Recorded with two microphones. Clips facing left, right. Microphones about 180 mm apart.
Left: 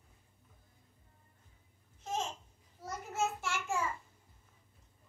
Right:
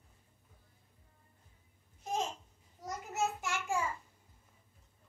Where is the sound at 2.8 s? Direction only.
15° right (ahead or behind).